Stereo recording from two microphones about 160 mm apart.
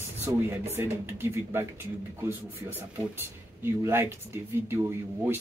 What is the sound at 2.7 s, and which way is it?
Speech, 15° right (ahead or behind).